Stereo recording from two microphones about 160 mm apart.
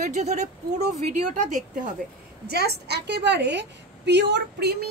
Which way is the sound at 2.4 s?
90° right.